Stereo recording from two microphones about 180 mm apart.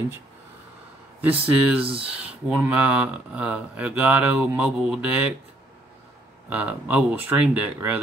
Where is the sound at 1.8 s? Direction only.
30° right (ahead or behind).